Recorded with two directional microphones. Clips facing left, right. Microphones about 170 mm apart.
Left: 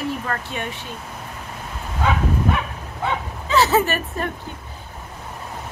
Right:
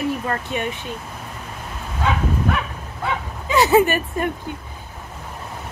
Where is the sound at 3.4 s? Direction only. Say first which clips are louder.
Right 3 dB; 15° right (ahead or behind).